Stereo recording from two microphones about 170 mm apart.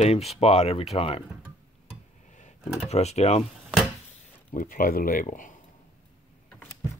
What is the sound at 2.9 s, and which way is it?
Speech, 40° left (ahead or behind).